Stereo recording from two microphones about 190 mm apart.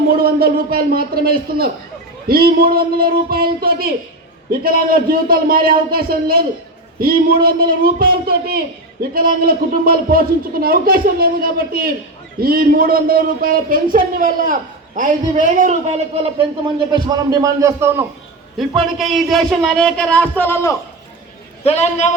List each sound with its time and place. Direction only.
0.1 s a man's voice: 50° right (ahead or behind); by 18.0 s 15° right (ahead or behind)
18.9 s a man's voice: centre (ahead or behind)
21.6 s a man's voice: 35° left (ahead or behind)